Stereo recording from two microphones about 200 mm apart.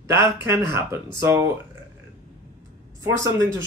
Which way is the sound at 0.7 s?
15° right (ahead or behind).